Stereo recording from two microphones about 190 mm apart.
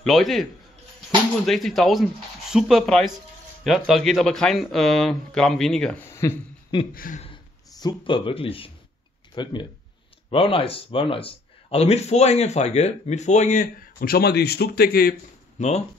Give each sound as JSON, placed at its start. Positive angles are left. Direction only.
{"t": 0.0, "sound": "speech", "side_deg": 0}
{"t": 6.9, "sound": "speech", "side_deg": 50}
{"t": 7.8, "sound": "a man's voice", "side_deg": 25}